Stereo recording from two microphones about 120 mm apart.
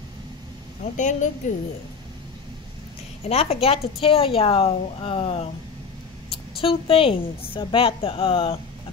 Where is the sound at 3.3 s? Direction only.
60° left (ahead or behind).